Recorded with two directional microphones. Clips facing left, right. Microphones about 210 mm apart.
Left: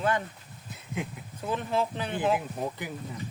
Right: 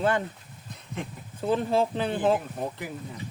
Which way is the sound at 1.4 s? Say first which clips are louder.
Right 5 dB; 30° right (ahead or behind).